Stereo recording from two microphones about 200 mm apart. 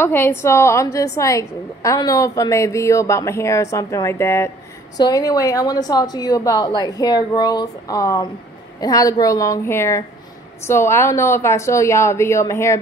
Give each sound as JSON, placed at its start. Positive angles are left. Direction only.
{"t": 0.0, "sound": "a woman's voice", "side_deg": 10}